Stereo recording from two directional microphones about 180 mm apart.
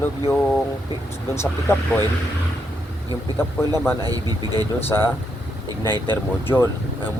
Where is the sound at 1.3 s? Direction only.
15° left (ahead or behind).